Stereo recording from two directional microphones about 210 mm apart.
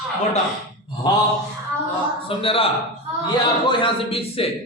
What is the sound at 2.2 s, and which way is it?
Speech, 25° left (ahead or behind).